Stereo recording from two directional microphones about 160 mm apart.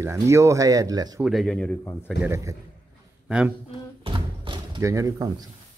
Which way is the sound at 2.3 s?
20° right (ahead or behind).